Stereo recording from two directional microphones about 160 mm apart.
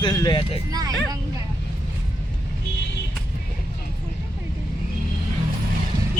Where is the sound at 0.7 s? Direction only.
25° right (ahead or behind).